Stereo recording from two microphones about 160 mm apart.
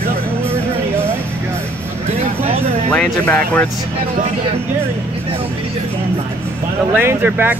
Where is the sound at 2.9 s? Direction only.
10° left (ahead or behind).